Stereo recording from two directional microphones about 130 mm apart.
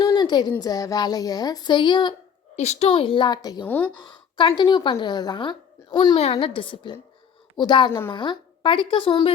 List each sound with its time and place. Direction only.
0.1 s a sound: 35° left (ahead or behind)
0.6 s a woman's voice: 30° left (ahead or behind)
2.6 s a woman's voice: 55° left (ahead or behind)
2.9 s a woman's voice: 40° left (ahead or behind)
3.7 s speech: 15° left (ahead or behind)
4.0 s a woman's voice: 35° left (ahead or behind)
6.1 s a woman's voice: 50° left (ahead or behind)